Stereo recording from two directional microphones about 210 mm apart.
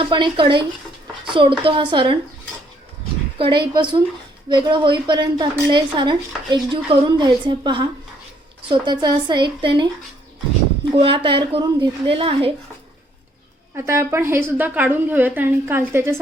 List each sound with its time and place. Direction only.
0.0 s a woman's voice: 25° right (ahead or behind)
3.3 s a woman's voice: 25° right (ahead or behind)
10.9 s a woman's voice: 25° right (ahead or behind)
13.7 s a woman's voice: 10° right (ahead or behind)